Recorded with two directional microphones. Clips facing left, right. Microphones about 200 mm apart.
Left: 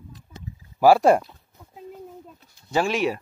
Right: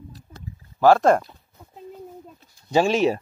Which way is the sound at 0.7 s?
10° left (ahead or behind).